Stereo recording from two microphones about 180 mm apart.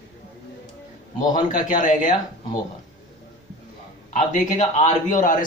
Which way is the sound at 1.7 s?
45° left (ahead or behind).